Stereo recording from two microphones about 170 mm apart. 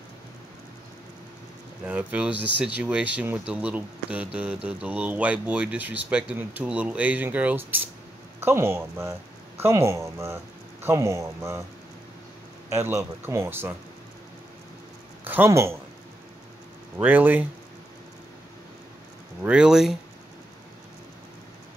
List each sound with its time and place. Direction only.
1.9 s speech: 10° right (ahead or behind)
12.6 s speech: 15° right (ahead or behind)
15.2 s speech: 15° right (ahead or behind)
17.0 s speech: 10° right (ahead or behind)
19.4 s speech: 5° right (ahead or behind)